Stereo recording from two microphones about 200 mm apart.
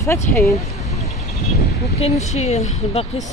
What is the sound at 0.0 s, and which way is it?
Speech, 15° left (ahead or behind).